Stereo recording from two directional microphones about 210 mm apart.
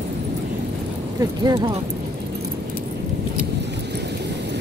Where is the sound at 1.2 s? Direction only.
20° right (ahead or behind).